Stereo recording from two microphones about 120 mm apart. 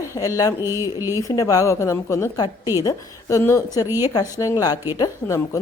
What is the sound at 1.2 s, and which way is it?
A woman's voice, 30° left (ahead or behind).